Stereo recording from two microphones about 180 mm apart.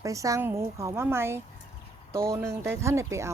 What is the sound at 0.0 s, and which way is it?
Speech, 20° right (ahead or behind).